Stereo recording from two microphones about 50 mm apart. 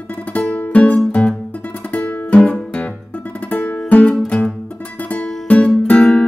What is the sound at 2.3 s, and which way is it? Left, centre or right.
Music, left.